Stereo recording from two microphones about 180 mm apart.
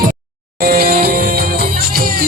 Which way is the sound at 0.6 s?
55° right (ahead or behind).